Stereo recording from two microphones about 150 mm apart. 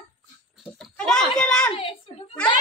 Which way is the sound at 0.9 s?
5° left (ahead or behind).